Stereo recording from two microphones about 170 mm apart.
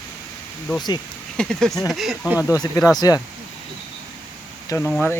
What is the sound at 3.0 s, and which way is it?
Speech, 20° left (ahead or behind).